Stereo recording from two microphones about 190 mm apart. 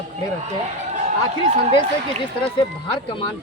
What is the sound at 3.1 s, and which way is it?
Speech, 25° left (ahead or behind).